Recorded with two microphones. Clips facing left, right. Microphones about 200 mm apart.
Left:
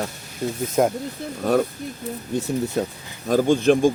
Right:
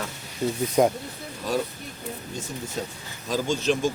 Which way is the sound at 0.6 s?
Centre (ahead or behind).